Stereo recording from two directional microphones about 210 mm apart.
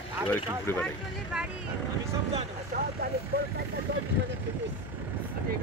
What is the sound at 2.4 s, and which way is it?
Speech, 40° right (ahead or behind).